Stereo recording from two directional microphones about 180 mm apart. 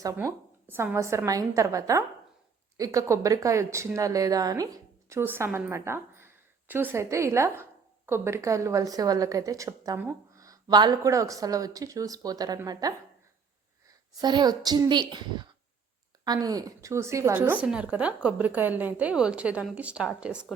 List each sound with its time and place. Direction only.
0.0 s speech: 15° right (ahead or behind)
14.2 s a woman's voice: 25° right (ahead or behind); by 20.5 s 5° right (ahead or behind)